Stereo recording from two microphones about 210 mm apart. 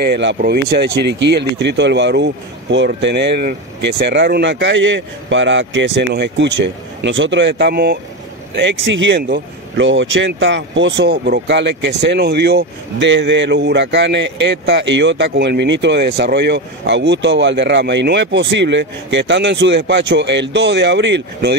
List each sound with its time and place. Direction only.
0.0 s speech: 55° right (ahead or behind)
8.5 s speech: 60° right (ahead or behind)